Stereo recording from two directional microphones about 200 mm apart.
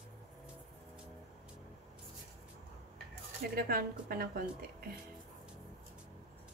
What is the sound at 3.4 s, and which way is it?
A woman's voice, 50° right (ahead or behind).